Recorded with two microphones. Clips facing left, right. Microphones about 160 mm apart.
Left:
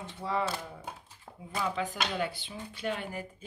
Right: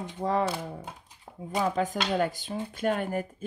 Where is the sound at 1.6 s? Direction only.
45° right (ahead or behind).